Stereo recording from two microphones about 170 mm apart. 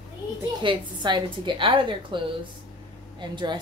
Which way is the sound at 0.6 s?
25° right (ahead or behind).